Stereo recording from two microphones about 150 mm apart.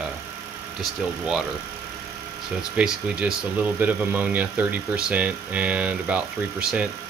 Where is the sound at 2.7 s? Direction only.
10° right (ahead or behind).